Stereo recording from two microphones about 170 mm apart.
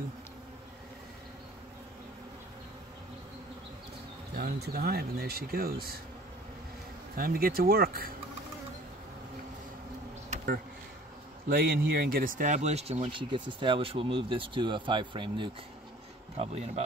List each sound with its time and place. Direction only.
4.4 s speech: 70° right (ahead or behind)
7.2 s speech: 60° right (ahead or behind)
11.4 s speech: 65° right (ahead or behind); by 15.5 s 30° right (ahead or behind)
16.3 s speech: 40° right (ahead or behind)